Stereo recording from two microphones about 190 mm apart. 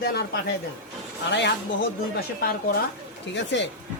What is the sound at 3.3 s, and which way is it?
Speech, 70° left (ahead or behind).